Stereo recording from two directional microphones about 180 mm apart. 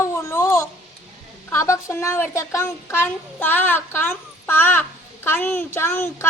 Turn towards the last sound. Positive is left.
turn(degrees=15)  # may be behind; listen again after turning